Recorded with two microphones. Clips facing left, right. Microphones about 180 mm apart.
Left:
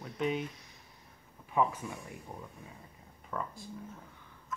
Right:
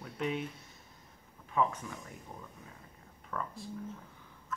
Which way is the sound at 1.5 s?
15° left (ahead or behind).